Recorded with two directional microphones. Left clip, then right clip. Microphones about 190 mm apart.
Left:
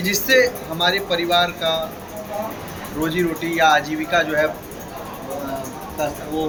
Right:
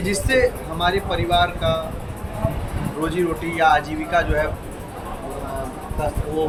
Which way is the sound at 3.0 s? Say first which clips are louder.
Left 1 dB; 20° left (ahead or behind).